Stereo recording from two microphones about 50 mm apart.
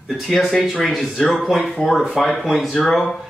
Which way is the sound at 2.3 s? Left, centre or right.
Centre.